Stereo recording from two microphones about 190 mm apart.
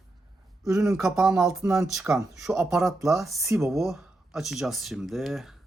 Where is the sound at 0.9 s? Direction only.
Centre (ahead or behind).